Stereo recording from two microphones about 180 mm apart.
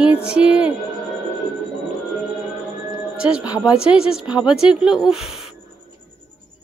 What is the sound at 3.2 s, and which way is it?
Speech, 5° right (ahead or behind).